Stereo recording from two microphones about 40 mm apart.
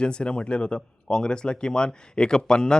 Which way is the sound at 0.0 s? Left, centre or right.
Left.